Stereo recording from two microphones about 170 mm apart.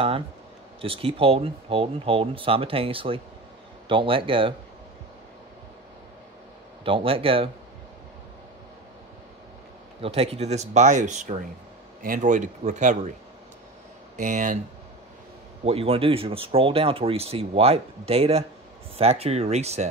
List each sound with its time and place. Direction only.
0.7 s speech: 35° right (ahead or behind)
6.8 s speech: 30° right (ahead or behind)
10.0 s speech: 35° right (ahead or behind)
14.1 s speech: 50° right (ahead or behind)
15.6 s speech: 35° right (ahead or behind)